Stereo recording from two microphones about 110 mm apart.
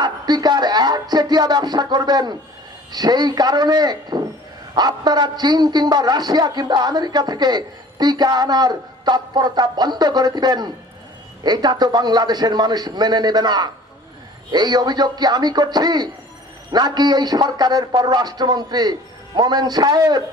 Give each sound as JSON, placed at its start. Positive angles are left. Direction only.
{"t": 0.0, "sound": "a man's voice", "side_deg": -40}